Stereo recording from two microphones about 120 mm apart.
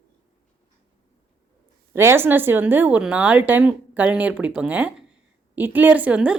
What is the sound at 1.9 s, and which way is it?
Speech, 20° right (ahead or behind).